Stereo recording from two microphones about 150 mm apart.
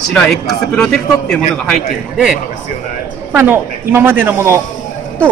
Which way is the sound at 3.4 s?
15° right (ahead or behind).